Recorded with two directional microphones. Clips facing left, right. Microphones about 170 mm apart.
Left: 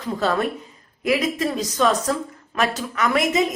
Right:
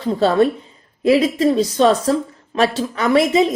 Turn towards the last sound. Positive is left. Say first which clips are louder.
# right 6 dB
turn(degrees=-30)  # may be behind; listen again after turning